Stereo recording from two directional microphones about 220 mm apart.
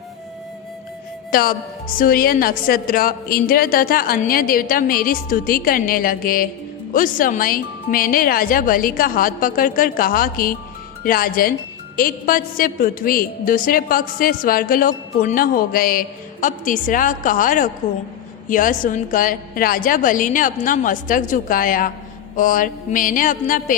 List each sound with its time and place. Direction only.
1.3 s a woman's voice: 40° left (ahead or behind)